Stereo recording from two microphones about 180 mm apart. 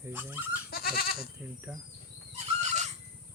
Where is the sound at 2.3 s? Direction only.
40° right (ahead or behind).